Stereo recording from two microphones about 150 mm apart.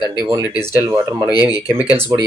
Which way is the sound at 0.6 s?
20° right (ahead or behind).